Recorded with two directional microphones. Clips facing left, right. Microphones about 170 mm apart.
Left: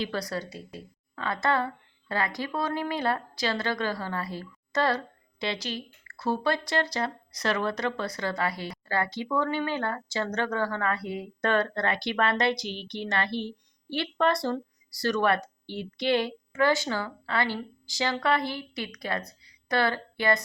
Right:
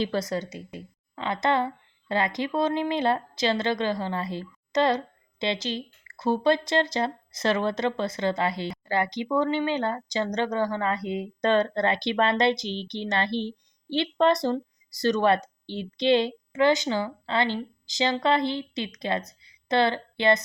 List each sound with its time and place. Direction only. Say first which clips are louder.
0.0 s a woman's voice: right 4 dB; 25° right (ahead or behind)